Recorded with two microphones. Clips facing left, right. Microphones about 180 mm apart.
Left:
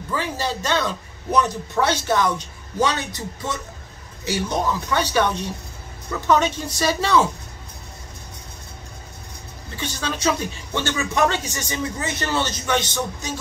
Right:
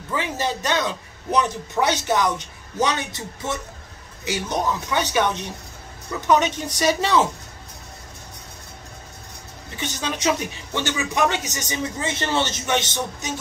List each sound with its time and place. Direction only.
0.1 s a man's voice: 20° right (ahead or behind)
9.8 s a man's voice: 20° right (ahead or behind)